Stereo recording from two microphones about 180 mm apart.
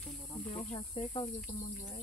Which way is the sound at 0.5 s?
30° left (ahead or behind).